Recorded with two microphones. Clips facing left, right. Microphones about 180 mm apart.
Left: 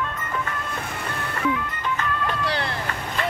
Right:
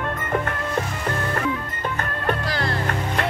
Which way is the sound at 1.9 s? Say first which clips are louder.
Right 3 dB; 55° right (ahead or behind).